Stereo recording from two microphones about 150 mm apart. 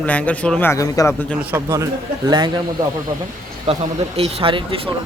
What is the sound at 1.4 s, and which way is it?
Speech, 20° right (ahead or behind).